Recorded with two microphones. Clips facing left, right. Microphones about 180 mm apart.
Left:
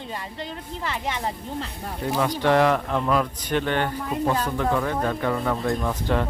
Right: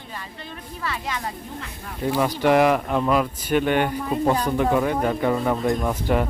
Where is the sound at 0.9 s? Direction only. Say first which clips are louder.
Left 3 dB; 25° left (ahead or behind).